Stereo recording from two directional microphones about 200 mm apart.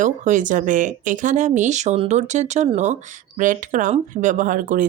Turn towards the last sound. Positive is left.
turn(degrees=-40)  # may be behind; listen again after turning